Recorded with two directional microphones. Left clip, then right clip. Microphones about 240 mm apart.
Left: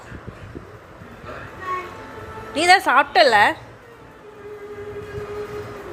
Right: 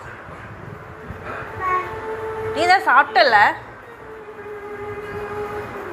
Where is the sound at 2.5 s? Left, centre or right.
Left.